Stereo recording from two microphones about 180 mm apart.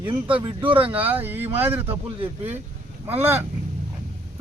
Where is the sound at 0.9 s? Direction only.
10° right (ahead or behind).